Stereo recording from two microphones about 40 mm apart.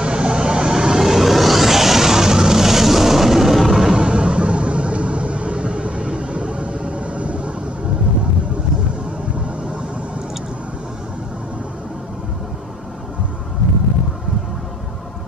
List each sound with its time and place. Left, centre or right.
0.0 s music: right; by 3.9 s centre
3.9 s vehicle: right